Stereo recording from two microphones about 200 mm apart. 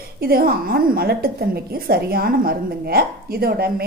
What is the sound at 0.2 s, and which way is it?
A woman's voice, 50° right (ahead or behind).